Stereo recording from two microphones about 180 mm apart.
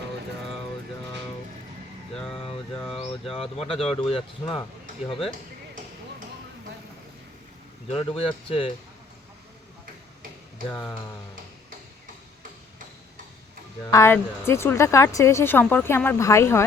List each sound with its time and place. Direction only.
2.1 s a sound: 5° left (ahead or behind)
3.2 s speech: 35° left (ahead or behind)
7.9 s speech: 30° left (ahead or behind)
13.8 s speech: 15° left (ahead or behind)